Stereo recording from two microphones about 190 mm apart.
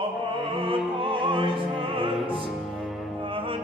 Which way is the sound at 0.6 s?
30° right (ahead or behind).